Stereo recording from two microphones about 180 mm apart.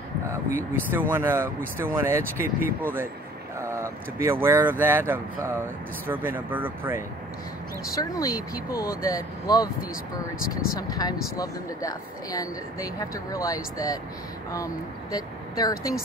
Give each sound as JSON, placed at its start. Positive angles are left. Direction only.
{"t": 0.3, "sound": "speech", "side_deg": -10}
{"t": 8.0, "sound": "speech", "side_deg": 20}
{"t": 10.7, "sound": "speech", "side_deg": 20}